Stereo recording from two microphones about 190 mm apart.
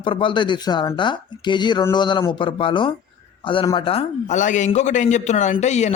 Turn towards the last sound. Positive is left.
turn(degrees=35)  # may be behind; listen again after turning